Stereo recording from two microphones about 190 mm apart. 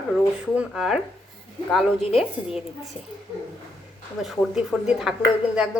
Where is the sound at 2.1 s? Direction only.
Centre (ahead or behind).